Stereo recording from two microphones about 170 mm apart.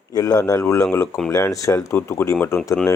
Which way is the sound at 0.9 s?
5° left (ahead or behind).